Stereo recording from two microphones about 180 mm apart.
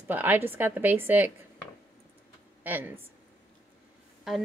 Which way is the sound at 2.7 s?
10° right (ahead or behind).